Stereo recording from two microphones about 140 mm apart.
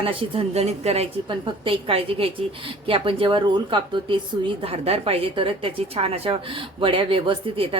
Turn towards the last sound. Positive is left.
turn(degrees=-40)  # may be behind; listen again after turning